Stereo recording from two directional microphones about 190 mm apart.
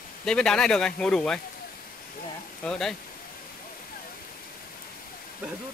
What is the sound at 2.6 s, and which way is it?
Speech, 5° left (ahead or behind).